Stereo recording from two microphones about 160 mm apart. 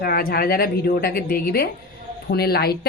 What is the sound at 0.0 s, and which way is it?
A woman's voice, 75° left (ahead or behind).